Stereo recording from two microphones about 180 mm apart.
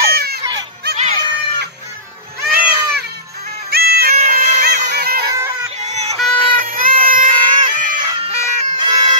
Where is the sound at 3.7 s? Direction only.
60° right (ahead or behind).